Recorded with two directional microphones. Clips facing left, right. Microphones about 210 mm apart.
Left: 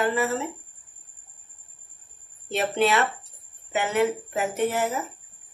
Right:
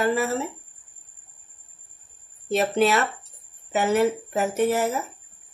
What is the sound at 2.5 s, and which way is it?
Speech, 40° right (ahead or behind).